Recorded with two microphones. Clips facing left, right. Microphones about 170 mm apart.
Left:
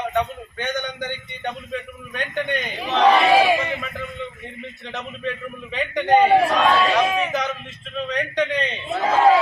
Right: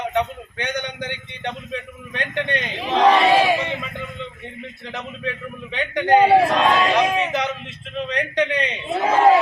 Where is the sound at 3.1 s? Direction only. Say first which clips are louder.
Even; 10° left (ahead or behind).